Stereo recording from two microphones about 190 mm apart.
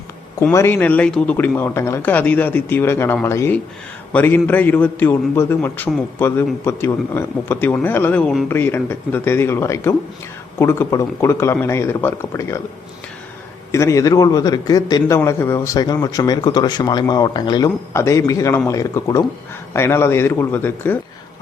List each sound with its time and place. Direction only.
0.4 s a man's voice: 10° left (ahead or behind)
13.7 s a man's voice: 15° left (ahead or behind)